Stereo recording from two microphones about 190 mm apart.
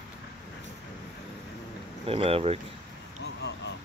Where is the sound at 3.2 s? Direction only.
65° left (ahead or behind).